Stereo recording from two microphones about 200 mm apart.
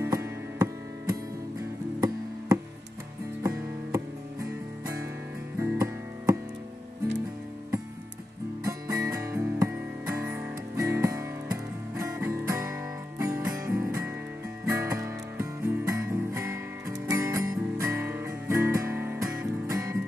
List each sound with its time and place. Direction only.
0.0 s music: 15° right (ahead or behind)
2.0 s music: 15° right (ahead or behind)
8.6 s music: 15° right (ahead or behind)